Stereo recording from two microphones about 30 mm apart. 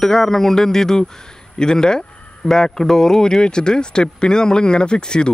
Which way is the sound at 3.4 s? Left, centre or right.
Left.